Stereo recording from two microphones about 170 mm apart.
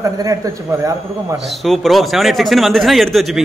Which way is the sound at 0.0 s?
20° right (ahead or behind).